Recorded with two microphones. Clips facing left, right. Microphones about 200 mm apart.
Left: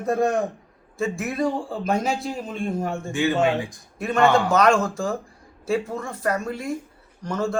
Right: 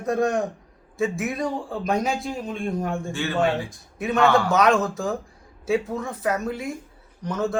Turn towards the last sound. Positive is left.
turn(degrees=0)  # may be behind; listen again after turning